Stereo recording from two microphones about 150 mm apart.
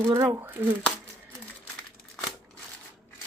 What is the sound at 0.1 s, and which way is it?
Speech, 25° right (ahead or behind).